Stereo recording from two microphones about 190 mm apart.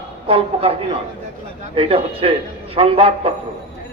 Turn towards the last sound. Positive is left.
turn(degrees=-30)  # may be behind; listen again after turning